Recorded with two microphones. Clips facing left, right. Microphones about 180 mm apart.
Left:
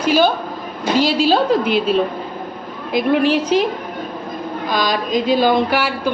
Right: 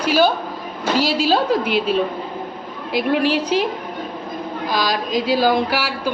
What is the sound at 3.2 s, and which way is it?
Speech, 45° left (ahead or behind).